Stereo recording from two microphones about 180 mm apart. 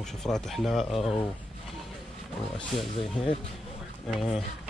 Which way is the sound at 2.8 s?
30° left (ahead or behind).